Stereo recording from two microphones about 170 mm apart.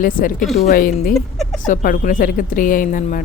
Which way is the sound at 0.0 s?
55° left (ahead or behind).